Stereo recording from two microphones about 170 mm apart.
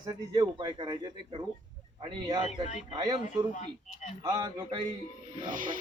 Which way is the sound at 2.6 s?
45° left (ahead or behind).